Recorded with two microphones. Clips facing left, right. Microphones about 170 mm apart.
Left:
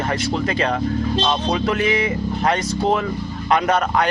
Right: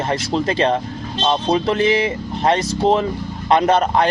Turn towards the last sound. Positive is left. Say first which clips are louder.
# right 3 dB
turn(degrees=-30)  # may be behind; listen again after turning